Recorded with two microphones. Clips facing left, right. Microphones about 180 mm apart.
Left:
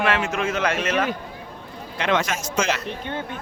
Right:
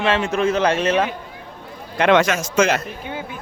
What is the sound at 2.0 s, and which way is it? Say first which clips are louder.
Speech: right 7 dB; 70° right (ahead or behind).